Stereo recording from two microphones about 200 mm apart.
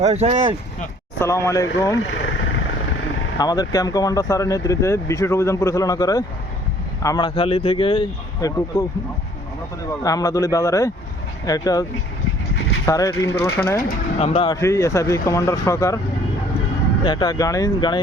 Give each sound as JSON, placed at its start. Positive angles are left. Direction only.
{"t": 0.0, "sound": "speech", "side_deg": -30}
{"t": 1.2, "sound": "speech", "side_deg": 15}
{"t": 3.3, "sound": "speech", "side_deg": 20}
{"t": 10.0, "sound": "speech", "side_deg": 15}
{"t": 13.8, "sound": "speech", "side_deg": 30}
{"t": 14.5, "sound": "speech", "side_deg": 15}
{"t": 17.0, "sound": "speech", "side_deg": 20}